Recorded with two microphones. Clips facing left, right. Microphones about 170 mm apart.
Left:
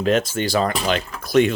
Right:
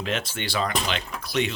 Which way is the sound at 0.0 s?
45° left (ahead or behind).